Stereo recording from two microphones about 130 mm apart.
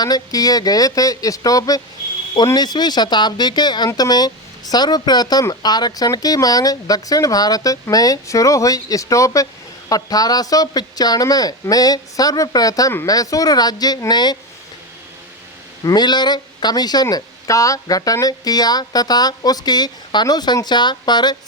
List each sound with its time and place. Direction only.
0.0 s speech: 30° left (ahead or behind)
15.8 s speech: 30° left (ahead or behind)